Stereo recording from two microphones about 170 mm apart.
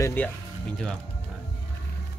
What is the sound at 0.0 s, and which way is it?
Speech, 10° left (ahead or behind).